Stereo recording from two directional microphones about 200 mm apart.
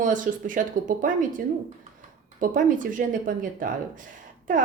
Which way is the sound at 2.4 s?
40° right (ahead or behind).